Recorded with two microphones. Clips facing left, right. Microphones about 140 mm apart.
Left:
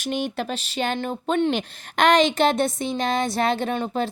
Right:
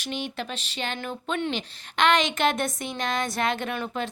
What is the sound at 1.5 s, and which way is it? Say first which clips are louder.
A woman's voice: left 5 dB; 50° left (ahead or behind).